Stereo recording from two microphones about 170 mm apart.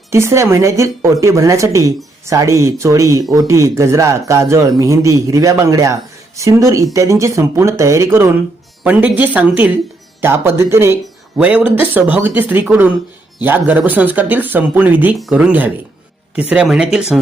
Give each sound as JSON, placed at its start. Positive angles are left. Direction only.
{"t": 0.1, "sound": "speech", "side_deg": -15}